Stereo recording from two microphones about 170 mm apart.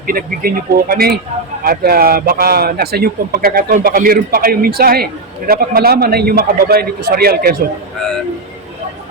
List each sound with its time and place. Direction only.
0.1 s a man's voice: 60° right (ahead or behind)